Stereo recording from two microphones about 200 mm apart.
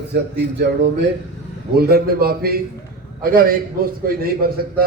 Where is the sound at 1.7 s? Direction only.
50° right (ahead or behind).